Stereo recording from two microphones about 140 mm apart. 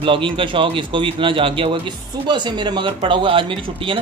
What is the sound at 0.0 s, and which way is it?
Speech, 40° right (ahead or behind).